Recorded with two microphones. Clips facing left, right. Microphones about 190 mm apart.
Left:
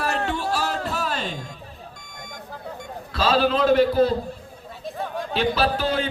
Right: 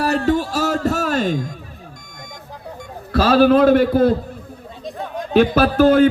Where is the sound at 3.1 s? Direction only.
50° right (ahead or behind).